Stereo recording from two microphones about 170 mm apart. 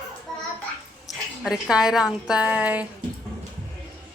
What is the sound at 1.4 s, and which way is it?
A woman's voice, 5° right (ahead or behind).